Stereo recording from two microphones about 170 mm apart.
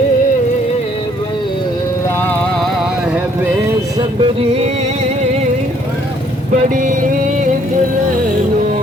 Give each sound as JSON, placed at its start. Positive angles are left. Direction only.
{"t": 4.2, "sound": "music", "side_deg": -35}
{"t": 6.7, "sound": "music", "side_deg": -50}